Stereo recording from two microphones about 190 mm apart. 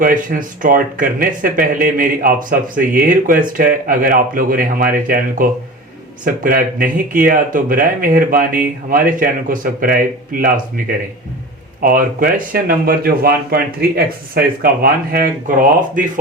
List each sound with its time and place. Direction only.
0.0 s speech: 45° right (ahead or behind)
11.8 s speech: 50° right (ahead or behind)